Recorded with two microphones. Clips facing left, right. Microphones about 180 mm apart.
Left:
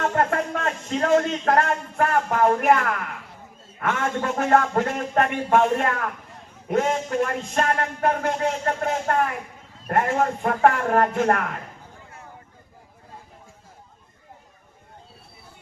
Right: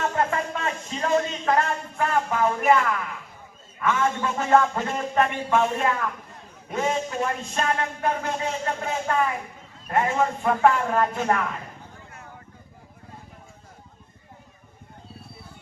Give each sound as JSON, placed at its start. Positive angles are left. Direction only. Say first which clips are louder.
{"t": 0.0, "sound": "speech", "louder": "left 2 dB", "side_deg": 55}